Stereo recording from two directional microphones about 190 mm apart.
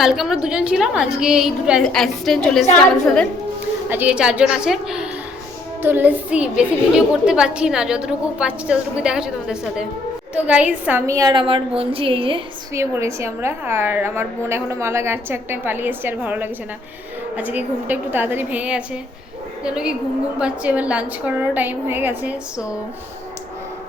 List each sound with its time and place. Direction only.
0.0 s a child's voice: centre (ahead or behind)
3.8 s a child's voice: 10° right (ahead or behind); by 12.4 s 30° right (ahead or behind)
12.7 s a woman's voice: 15° right (ahead or behind)